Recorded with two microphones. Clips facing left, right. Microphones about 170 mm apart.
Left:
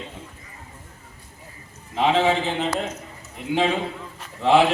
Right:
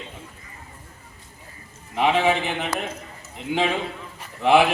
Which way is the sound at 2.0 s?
15° right (ahead or behind).